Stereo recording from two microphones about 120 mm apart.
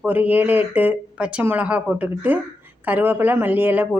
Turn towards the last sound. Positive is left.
turn(degrees=-15)  # may be behind; listen again after turning